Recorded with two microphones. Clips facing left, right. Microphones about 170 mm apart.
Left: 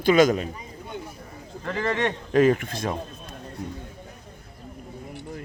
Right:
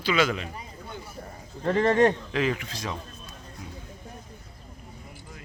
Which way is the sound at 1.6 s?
30° right (ahead or behind).